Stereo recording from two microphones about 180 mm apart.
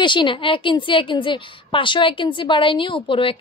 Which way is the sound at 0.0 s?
25° left (ahead or behind).